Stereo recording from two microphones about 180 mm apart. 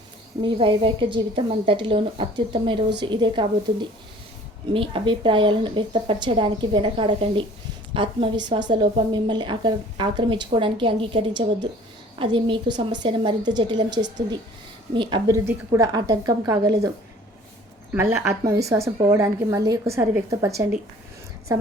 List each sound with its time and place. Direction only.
0.4 s a woman's voice: 25° right (ahead or behind)
15.4 s a woman's voice: 15° right (ahead or behind)
17.9 s a woman's voice: 15° right (ahead or behind)
21.5 s a woman's voice: 20° right (ahead or behind)